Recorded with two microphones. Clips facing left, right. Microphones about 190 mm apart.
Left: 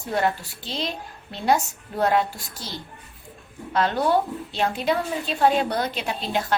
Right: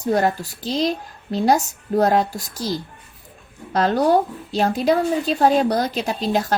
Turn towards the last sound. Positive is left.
turn(degrees=-40)  # may be behind; listen again after turning